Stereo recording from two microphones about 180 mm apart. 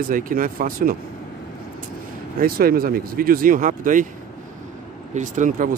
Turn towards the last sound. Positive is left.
turn(degrees=-45)  # may be behind; listen again after turning